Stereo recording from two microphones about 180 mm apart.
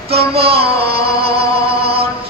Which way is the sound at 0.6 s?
60° right (ahead or behind).